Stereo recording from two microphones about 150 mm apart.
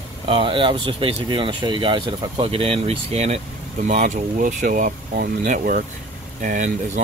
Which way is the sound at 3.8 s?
55° right (ahead or behind).